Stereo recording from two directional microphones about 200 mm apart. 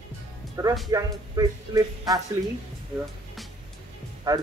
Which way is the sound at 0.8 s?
20° right (ahead or behind).